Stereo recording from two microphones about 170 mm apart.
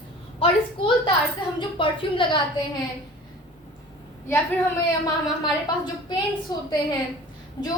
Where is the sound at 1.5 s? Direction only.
30° left (ahead or behind).